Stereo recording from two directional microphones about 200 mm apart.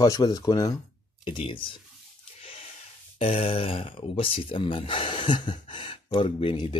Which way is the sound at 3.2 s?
30° left (ahead or behind).